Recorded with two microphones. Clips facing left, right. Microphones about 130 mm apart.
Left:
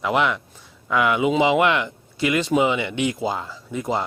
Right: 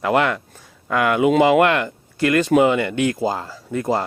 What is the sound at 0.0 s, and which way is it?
Speech, 45° right (ahead or behind).